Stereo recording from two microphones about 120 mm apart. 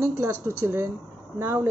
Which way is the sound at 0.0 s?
20° right (ahead or behind).